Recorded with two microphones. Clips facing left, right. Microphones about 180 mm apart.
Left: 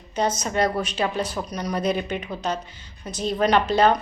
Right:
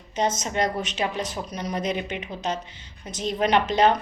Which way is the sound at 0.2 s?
25° right (ahead or behind).